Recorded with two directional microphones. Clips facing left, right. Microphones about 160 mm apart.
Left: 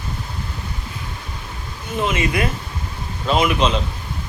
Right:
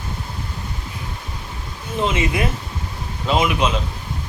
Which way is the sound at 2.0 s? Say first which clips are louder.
Even; 25° right (ahead or behind).